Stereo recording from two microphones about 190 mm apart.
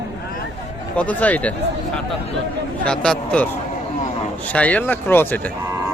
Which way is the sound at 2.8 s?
5° left (ahead or behind).